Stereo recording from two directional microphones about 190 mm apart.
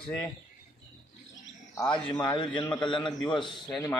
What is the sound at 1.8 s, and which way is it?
A man's voice, 20° left (ahead or behind).